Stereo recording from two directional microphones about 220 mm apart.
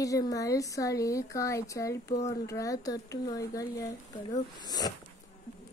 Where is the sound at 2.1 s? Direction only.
30° left (ahead or behind).